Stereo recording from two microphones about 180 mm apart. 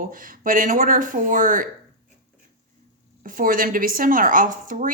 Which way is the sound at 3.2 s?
50° right (ahead or behind).